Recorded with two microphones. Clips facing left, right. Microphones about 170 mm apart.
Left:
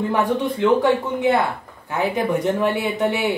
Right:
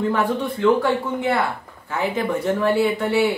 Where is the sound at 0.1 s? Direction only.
15° left (ahead or behind).